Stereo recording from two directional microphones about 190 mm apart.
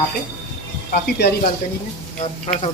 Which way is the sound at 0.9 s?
60° left (ahead or behind).